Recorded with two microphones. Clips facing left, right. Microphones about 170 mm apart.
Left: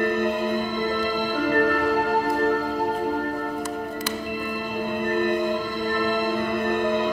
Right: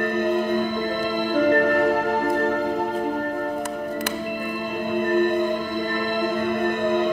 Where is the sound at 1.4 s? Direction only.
50° right (ahead or behind).